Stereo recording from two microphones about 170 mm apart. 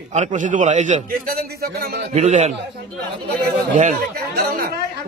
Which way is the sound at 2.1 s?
40° right (ahead or behind).